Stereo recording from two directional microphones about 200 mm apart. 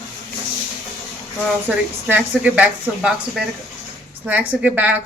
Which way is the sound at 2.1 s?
10° right (ahead or behind).